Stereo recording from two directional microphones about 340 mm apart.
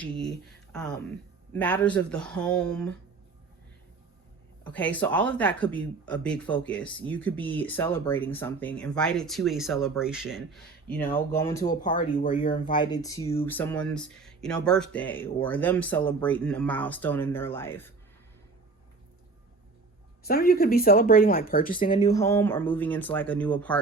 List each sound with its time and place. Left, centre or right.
0.0 s speech: centre
4.6 s speech: centre
11.8 s speech: left
12.7 s speech: centre
20.2 s speech: left
21.8 s speech: centre